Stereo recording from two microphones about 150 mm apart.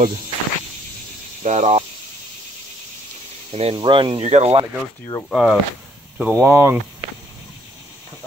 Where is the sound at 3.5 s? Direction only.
40° right (ahead or behind).